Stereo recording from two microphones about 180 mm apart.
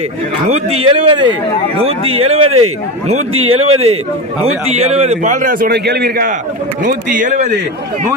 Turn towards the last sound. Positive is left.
turn(degrees=-50)  # may be behind; listen again after turning